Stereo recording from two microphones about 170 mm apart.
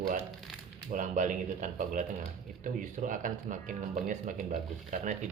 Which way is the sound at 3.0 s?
50° right (ahead or behind).